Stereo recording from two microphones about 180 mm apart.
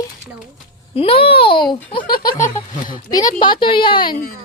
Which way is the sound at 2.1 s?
55° left (ahead or behind).